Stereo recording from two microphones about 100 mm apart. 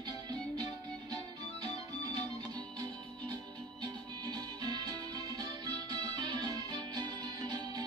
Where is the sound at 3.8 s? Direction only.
45° right (ahead or behind).